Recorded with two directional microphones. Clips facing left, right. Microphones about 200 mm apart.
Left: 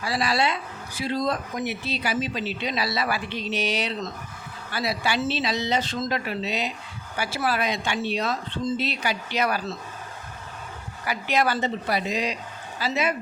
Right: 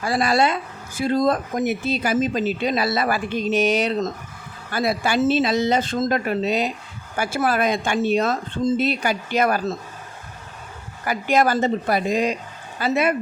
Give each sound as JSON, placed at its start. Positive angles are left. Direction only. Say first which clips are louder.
{"t": 0.0, "sound": "speech", "louder": "right 5 dB", "side_deg": -50}
{"t": 11.0, "sound": "speech", "louder": "right 5 dB", "side_deg": -45}